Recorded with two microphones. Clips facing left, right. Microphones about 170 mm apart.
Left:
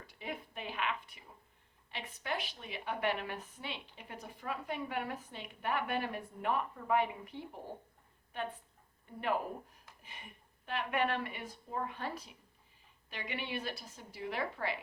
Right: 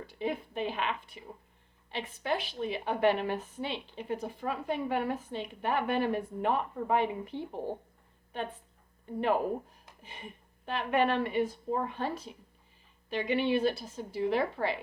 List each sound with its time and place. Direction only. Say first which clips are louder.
0.1 s a woman's voice: right 9 dB; 30° right (ahead or behind)
10.0 s a woman's voice: right 8 dB; 30° right (ahead or behind)